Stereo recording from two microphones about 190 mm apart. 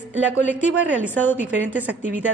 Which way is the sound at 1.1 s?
10° left (ahead or behind).